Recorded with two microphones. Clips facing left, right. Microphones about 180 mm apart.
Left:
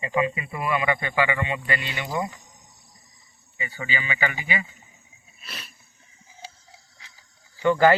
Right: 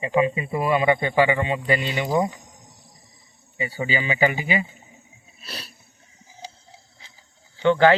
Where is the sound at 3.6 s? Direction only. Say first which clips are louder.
Right 6 dB; 35° right (ahead or behind).